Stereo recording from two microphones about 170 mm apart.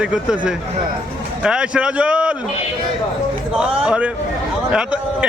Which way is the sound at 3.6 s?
5° right (ahead or behind).